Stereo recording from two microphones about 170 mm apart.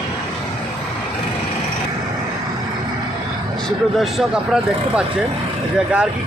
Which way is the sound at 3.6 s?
Centre (ahead or behind).